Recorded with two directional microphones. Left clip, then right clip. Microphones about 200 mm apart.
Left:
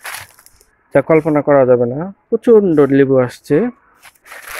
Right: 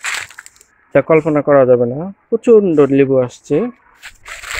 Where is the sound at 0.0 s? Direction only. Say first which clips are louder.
Right 7 dB; 5° left (ahead or behind).